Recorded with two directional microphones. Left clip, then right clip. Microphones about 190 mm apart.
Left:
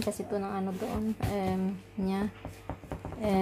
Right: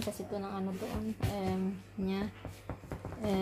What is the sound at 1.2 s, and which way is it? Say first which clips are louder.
Music: left 3 dB; 30° left (ahead or behind).